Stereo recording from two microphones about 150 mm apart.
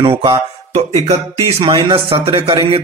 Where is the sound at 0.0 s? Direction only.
35° right (ahead or behind).